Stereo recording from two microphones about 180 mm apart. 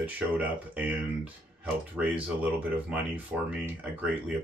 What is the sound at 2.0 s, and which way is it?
Speech, 10° right (ahead or behind).